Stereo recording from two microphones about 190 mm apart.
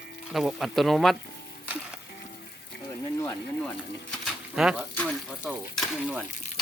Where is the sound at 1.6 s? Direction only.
10° right (ahead or behind).